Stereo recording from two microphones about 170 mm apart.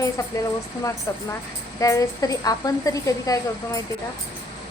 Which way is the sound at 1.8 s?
20° left (ahead or behind).